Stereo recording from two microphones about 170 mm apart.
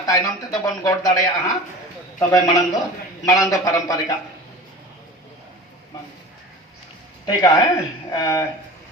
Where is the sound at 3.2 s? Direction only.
20° left (ahead or behind).